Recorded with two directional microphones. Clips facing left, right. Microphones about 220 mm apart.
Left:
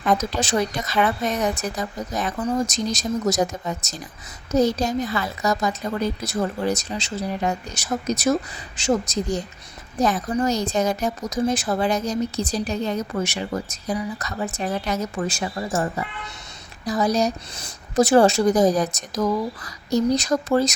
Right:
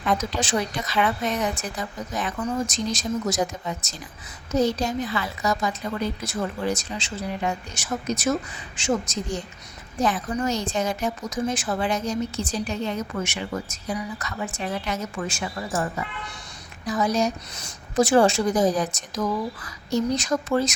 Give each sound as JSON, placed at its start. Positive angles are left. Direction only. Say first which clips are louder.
{"t": 0.0, "sound": "a woman's voice", "louder": "left 3 dB", "side_deg": 45}